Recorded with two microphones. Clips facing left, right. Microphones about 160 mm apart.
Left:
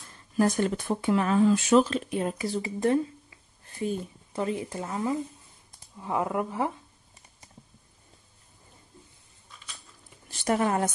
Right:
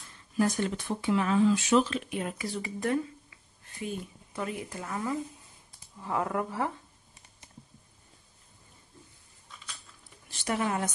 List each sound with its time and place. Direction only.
0.4 s speech: 45° left (ahead or behind); by 6.7 s 20° left (ahead or behind)
10.4 s speech: 45° left (ahead or behind)